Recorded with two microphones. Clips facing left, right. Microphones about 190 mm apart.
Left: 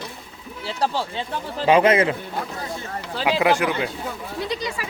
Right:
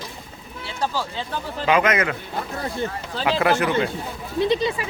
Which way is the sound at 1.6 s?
30° left (ahead or behind).